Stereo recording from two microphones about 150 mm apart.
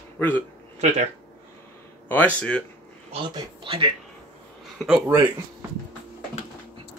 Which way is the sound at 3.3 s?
35° right (ahead or behind).